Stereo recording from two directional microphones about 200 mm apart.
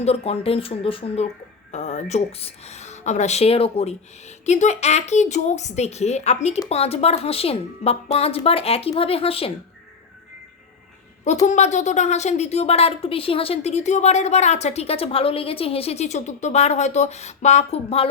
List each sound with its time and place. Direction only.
0.0 s a woman's voice: 30° left (ahead or behind)
11.4 s a woman's voice: 35° left (ahead or behind)